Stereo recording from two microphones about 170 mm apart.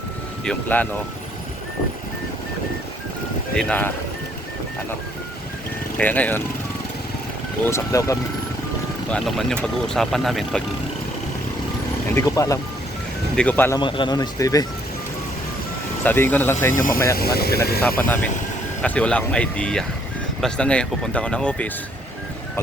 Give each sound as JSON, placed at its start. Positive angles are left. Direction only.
{"t": 0.4, "sound": "speech", "side_deg": 10}
{"t": 3.5, "sound": "speech", "side_deg": 5}
{"t": 6.0, "sound": "speech", "side_deg": 10}
{"t": 7.6, "sound": "speech", "side_deg": 15}
{"t": 9.0, "sound": "speech", "side_deg": 5}
{"t": 12.1, "sound": "speech", "side_deg": 20}
{"t": 13.3, "sound": "speech", "side_deg": 5}
{"t": 13.7, "sound": "speech", "side_deg": 30}
{"t": 16.0, "sound": "speech", "side_deg": 10}
{"t": 17.2, "sound": "speech", "side_deg": 65}
{"t": 17.7, "sound": "speech", "side_deg": 10}